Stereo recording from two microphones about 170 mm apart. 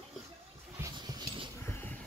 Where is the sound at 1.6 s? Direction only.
10° left (ahead or behind).